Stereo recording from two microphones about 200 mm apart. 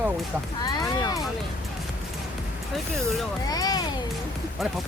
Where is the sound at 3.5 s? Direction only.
20° left (ahead or behind).